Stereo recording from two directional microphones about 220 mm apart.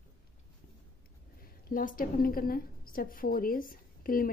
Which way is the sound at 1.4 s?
40° left (ahead or behind).